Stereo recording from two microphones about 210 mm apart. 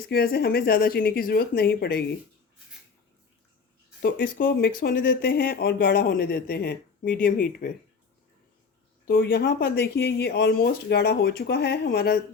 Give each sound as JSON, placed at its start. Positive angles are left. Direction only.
{"t": 0.1, "sound": "speech", "side_deg": 45}
{"t": 4.0, "sound": "speech", "side_deg": 45}
{"t": 9.0, "sound": "speech", "side_deg": 45}